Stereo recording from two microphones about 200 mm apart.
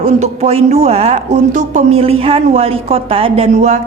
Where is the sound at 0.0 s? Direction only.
35° right (ahead or behind).